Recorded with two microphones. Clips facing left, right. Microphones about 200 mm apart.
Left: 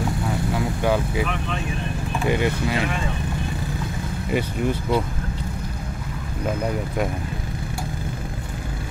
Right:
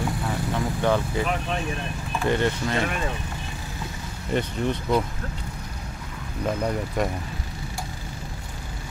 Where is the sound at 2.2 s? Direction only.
10° left (ahead or behind).